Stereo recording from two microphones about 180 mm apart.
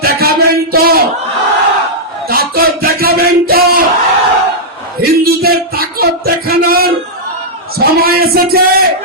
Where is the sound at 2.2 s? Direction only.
55° right (ahead or behind).